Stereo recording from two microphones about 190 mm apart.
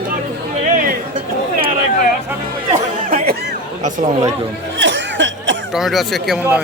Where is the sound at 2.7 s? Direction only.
45° right (ahead or behind).